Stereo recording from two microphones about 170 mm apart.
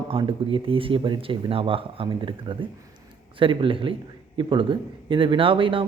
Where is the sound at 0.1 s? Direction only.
30° right (ahead or behind).